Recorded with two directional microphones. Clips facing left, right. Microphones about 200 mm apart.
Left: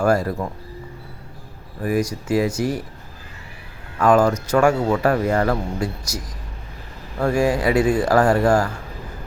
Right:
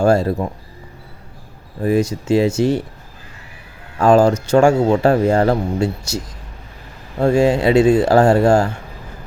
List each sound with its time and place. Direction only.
0.0 s speech: 25° right (ahead or behind)
1.8 s speech: 25° right (ahead or behind)
3.9 s speech: 30° right (ahead or behind)